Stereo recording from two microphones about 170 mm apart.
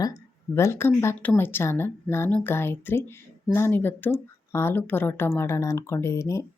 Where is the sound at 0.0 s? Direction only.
20° left (ahead or behind).